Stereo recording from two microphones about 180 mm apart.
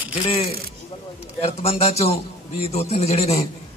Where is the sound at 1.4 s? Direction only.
35° left (ahead or behind).